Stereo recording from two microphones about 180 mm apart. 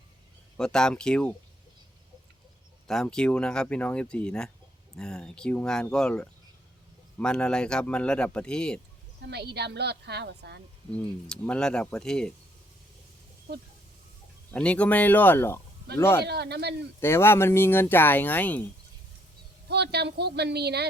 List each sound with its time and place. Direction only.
0.5 s speech: 5° left (ahead or behind)
2.8 s speech: 5° left (ahead or behind)
9.2 s a woman's voice: 65° right (ahead or behind)
10.9 s speech: 5° left (ahead or behind)
14.5 s speech: 5° left (ahead or behind)
16.2 s a woman's voice: 65° right (ahead or behind)
17.0 s speech: 15° left (ahead or behind)
19.6 s speech: 65° right (ahead or behind)